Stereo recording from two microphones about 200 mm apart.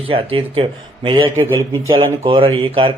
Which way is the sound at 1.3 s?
15° right (ahead or behind).